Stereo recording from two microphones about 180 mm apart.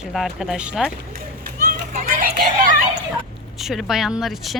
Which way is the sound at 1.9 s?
50° right (ahead or behind).